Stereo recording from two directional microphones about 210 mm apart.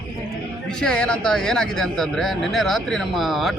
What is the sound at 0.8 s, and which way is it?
Speech, 5° left (ahead or behind).